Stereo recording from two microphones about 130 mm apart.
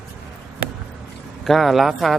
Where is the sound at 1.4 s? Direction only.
Centre (ahead or behind).